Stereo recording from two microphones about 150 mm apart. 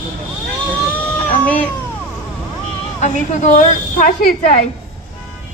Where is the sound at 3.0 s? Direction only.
50° left (ahead or behind).